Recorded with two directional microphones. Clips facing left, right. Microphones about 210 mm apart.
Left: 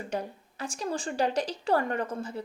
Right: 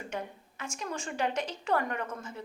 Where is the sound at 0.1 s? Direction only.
35° left (ahead or behind).